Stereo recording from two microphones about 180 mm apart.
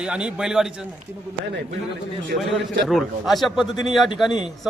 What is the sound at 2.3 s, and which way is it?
Speech, 55° right (ahead or behind).